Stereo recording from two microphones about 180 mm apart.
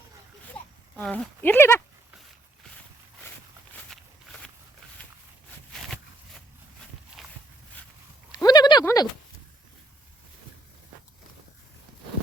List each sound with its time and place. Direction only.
0.9 s speech: 5° left (ahead or behind)
3.8 s walk: 5° left (ahead or behind)
7.2 s walk: centre (ahead or behind)
8.3 s a sound: 20° left (ahead or behind)